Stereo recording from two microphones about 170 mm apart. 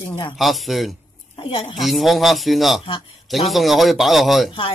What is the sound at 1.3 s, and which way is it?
Speech, 30° left (ahead or behind).